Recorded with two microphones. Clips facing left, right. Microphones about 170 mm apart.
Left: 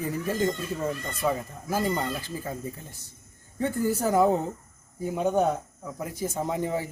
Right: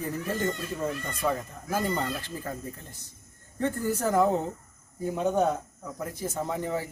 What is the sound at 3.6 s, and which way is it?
Speech, 10° left (ahead or behind).